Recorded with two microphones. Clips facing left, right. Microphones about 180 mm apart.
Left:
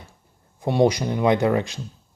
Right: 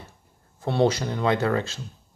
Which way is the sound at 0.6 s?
15° left (ahead or behind).